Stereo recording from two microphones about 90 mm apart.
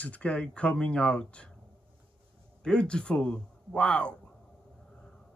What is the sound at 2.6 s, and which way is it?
Speech, 10° left (ahead or behind).